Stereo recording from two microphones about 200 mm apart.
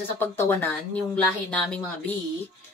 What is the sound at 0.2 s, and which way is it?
Speech, 10° left (ahead or behind).